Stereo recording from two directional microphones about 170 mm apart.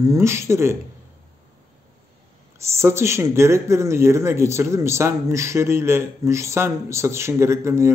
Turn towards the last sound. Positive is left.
turn(degrees=-15)  # may be behind; listen again after turning